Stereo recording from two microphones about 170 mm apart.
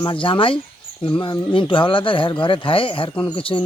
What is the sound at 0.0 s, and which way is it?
Speech, 30° left (ahead or behind).